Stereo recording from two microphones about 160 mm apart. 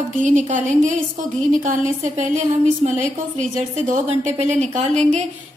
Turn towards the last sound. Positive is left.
turn(degrees=-45)  # may be behind; listen again after turning